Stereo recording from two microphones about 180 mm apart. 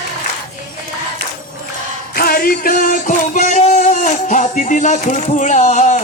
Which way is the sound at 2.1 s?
55° left (ahead or behind).